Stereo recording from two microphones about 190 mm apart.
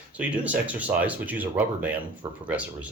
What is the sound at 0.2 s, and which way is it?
Speech, 5° right (ahead or behind).